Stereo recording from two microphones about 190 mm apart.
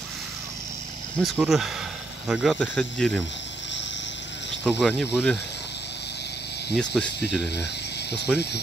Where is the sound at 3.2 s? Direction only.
70° left (ahead or behind).